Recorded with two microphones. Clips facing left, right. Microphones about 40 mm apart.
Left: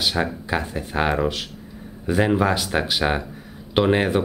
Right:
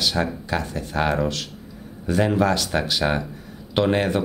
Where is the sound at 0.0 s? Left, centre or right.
Centre.